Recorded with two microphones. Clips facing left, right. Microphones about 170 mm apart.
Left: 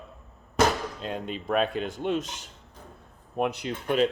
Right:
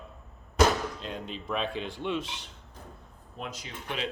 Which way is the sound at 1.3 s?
55° left (ahead or behind).